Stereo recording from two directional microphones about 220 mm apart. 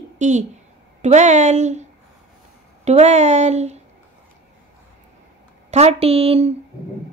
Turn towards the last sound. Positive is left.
turn(degrees=-25)  # may be behind; listen again after turning